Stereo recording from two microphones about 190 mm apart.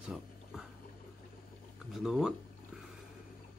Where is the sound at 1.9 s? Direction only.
Centre (ahead or behind).